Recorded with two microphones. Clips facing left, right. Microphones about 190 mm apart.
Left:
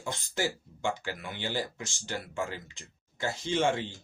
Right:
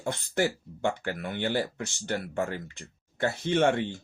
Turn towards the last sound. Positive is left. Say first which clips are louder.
# right 4 dB
turn(degrees=-60)  # may be behind; listen again after turning